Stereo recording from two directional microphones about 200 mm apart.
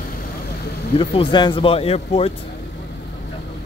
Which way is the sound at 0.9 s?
25° left (ahead or behind).